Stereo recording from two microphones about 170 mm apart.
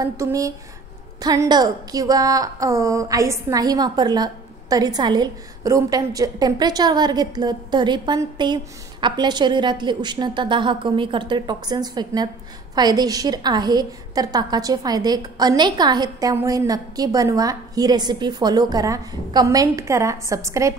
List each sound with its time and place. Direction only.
0.0 s a woman's voice: 20° right (ahead or behind)